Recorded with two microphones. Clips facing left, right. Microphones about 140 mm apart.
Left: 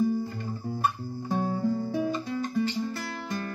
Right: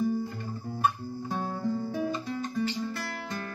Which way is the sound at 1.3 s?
15° left (ahead or behind).